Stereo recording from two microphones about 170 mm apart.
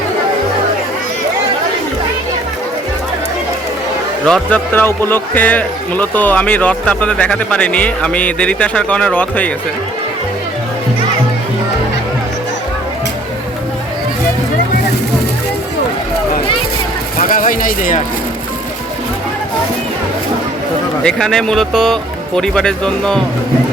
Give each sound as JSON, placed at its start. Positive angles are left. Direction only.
{"t": 4.3, "sound": "speech", "side_deg": 10}
{"t": 17.2, "sound": "speech", "side_deg": 55}
{"t": 21.0, "sound": "speech", "side_deg": 5}